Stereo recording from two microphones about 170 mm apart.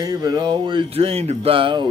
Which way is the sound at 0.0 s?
25° right (ahead or behind).